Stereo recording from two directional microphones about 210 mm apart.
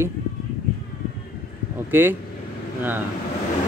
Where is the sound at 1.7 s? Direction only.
10° right (ahead or behind).